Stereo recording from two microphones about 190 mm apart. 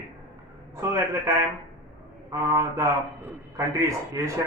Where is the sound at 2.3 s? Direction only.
15° right (ahead or behind).